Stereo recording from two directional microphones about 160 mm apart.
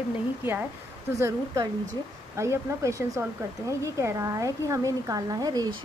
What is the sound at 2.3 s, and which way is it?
A woman's voice, 20° right (ahead or behind).